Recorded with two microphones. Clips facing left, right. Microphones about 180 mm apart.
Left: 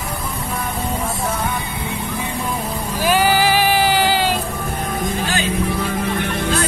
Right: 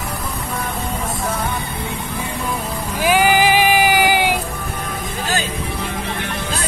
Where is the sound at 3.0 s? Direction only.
15° right (ahead or behind).